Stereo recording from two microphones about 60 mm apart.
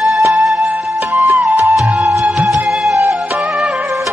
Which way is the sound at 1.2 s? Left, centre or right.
Right.